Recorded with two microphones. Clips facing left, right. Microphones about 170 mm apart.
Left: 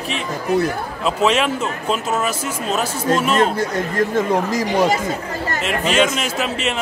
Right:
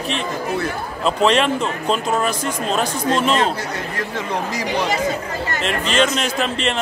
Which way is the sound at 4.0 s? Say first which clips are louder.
Left 8 dB; 45° left (ahead or behind).